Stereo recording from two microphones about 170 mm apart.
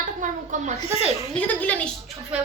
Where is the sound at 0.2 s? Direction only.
45° right (ahead or behind).